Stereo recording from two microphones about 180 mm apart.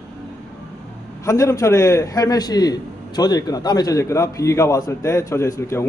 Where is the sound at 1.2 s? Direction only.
15° left (ahead or behind).